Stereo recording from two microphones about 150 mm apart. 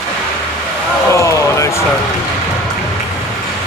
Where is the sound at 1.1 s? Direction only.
20° left (ahead or behind).